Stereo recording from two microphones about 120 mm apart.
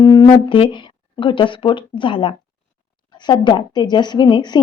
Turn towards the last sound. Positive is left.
turn(degrees=35)  # may be behind; listen again after turning